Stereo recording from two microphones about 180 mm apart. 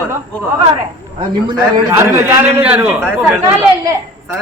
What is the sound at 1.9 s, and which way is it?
A man's voice, 10° right (ahead or behind).